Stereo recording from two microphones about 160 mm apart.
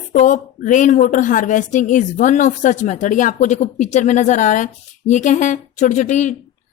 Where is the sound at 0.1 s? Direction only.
50° left (ahead or behind).